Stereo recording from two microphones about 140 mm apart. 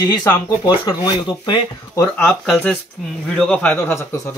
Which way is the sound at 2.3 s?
5° left (ahead or behind).